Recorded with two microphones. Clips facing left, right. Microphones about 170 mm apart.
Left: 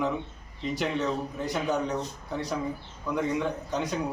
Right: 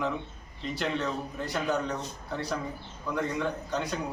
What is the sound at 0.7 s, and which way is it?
A man's voice, 15° left (ahead or behind).